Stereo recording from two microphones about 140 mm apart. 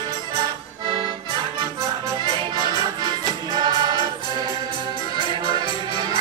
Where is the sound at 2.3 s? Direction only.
30° right (ahead or behind).